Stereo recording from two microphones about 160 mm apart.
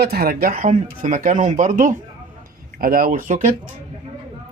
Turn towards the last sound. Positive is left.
turn(degrees=-55)  # may be behind; listen again after turning